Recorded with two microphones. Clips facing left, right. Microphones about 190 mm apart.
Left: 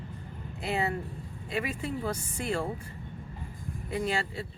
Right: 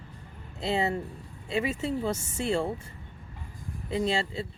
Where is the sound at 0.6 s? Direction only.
25° right (ahead or behind).